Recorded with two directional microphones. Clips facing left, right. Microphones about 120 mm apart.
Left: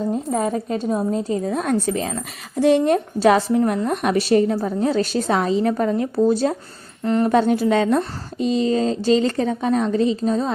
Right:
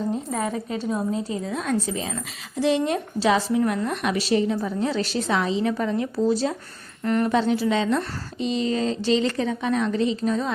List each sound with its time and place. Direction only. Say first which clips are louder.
0.3 s a woman's voice: left 5 dB; 35° left (ahead or behind); by 6.6 s 50° left (ahead or behind)
7.0 s speech: left 3 dB; 30° left (ahead or behind)
7.3 s a woman's voice: left 6 dB; 50° left (ahead or behind); by 10.5 s 35° left (ahead or behind)